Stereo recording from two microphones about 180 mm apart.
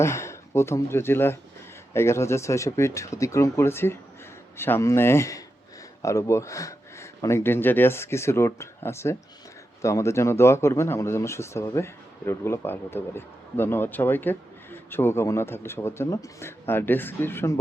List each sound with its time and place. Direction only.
0.0 s speech: 15° left (ahead or behind)